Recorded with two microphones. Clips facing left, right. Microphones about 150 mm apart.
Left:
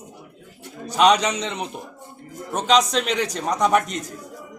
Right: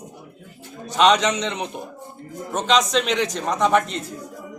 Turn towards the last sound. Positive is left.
turn(degrees=10)  # may be behind; listen again after turning